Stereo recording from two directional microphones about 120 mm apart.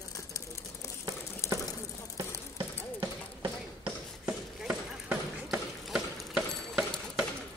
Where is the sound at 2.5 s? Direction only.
25° right (ahead or behind).